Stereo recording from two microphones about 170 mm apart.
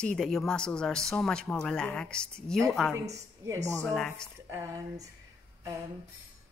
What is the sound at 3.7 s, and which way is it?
Speech, 5° left (ahead or behind).